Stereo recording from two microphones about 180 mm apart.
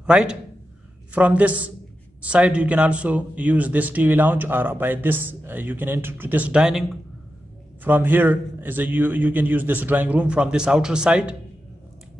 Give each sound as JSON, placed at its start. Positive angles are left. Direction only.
{"t": 0.0, "sound": "a man's voice", "side_deg": -5}